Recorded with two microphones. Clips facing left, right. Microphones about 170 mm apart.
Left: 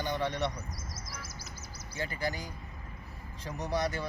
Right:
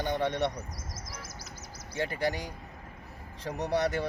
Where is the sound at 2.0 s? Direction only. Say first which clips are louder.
Right 5 dB; 70° right (ahead or behind).